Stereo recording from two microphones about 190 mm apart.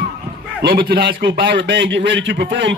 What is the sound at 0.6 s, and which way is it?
A man's voice, 60° right (ahead or behind).